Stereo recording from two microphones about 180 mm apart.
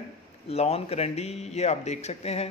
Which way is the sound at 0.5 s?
35° left (ahead or behind).